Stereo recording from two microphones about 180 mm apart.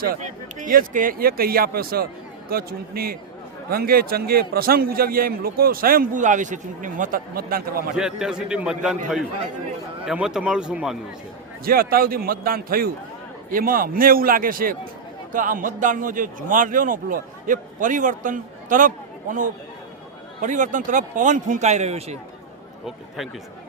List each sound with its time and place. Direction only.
0.0 s a man's voice: 50° right (ahead or behind)
7.9 s a man's voice: 5° right (ahead or behind)
10.1 s a man's voice: 5° right (ahead or behind)
11.6 s a man's voice: 55° right (ahead or behind); by 22.2 s 35° right (ahead or behind)
22.9 s a man's voice: centre (ahead or behind)